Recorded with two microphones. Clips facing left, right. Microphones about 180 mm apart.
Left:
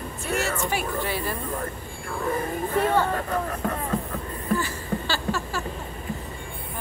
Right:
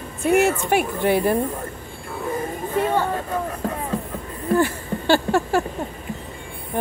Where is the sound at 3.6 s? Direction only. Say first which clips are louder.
Right 1 dB; 35° right (ahead or behind).